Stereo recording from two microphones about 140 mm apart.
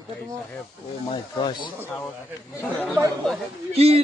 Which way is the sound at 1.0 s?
35° left (ahead or behind).